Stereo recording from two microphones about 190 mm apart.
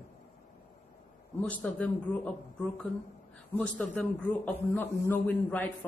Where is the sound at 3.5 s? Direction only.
10° left (ahead or behind).